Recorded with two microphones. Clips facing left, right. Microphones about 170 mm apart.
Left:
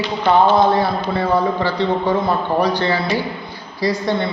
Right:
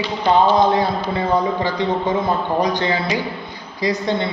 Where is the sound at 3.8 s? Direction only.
20° right (ahead or behind).